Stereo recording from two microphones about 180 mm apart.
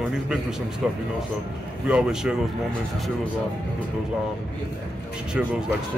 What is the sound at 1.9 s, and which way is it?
Speech, 5° right (ahead or behind).